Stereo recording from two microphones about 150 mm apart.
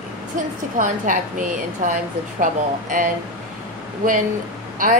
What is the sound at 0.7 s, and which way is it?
A woman's voice, 60° right (ahead or behind).